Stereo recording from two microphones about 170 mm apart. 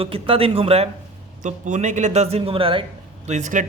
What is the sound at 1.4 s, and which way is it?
Speech, 45° right (ahead or behind).